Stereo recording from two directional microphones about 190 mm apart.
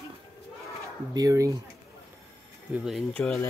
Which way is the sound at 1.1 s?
15° right (ahead or behind).